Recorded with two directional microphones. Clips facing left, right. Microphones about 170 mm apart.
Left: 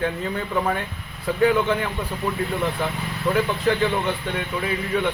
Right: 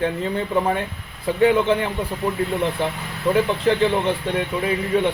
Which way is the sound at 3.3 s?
30° right (ahead or behind).